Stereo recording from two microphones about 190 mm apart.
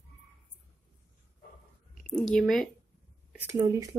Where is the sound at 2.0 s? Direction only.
5° left (ahead or behind).